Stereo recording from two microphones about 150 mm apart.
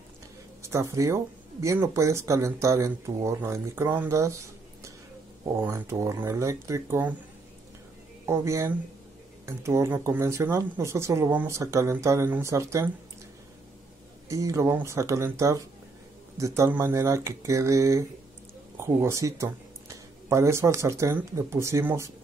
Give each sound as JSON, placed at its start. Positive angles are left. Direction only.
{"t": 0.6, "sound": "speech", "side_deg": -20}
{"t": 5.6, "sound": "speech", "side_deg": -15}
{"t": 8.3, "sound": "speech", "side_deg": -20}
{"t": 14.3, "sound": "speech", "side_deg": -20}